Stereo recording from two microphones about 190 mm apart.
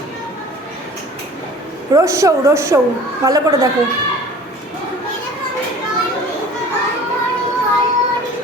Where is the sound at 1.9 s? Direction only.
15° right (ahead or behind).